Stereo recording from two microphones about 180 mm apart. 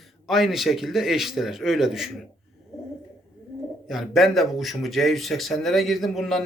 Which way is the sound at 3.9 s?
Centre (ahead or behind).